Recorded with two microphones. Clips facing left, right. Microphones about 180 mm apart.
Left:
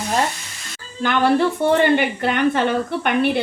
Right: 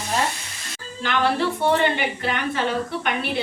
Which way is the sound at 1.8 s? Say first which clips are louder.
Left 6 dB; 55° left (ahead or behind).